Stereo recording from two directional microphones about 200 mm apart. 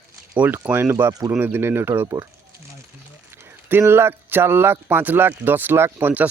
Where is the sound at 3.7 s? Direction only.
10° right (ahead or behind).